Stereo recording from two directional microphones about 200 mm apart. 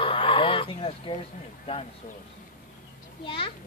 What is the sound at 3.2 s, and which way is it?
Speech, 25° left (ahead or behind).